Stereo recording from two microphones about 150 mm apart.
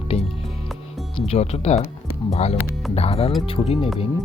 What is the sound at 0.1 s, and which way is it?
Music, 40° left (ahead or behind).